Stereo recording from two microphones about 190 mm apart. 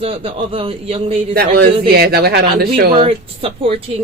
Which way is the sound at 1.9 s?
55° right (ahead or behind).